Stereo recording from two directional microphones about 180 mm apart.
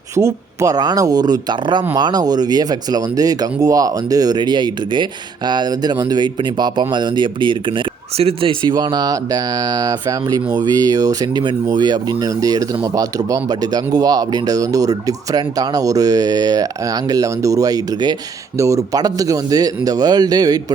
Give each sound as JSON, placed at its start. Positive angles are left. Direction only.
{"t": 0.2, "sound": "speech", "side_deg": -15}